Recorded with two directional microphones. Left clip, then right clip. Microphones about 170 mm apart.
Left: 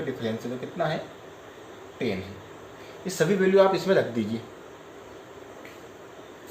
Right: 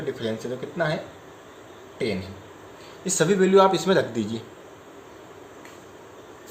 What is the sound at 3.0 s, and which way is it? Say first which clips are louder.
Speech: right 2 dB; 50° right (ahead or behind).